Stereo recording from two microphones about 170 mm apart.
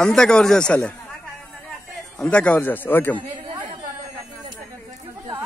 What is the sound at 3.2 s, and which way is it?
Chatter, 30° right (ahead or behind).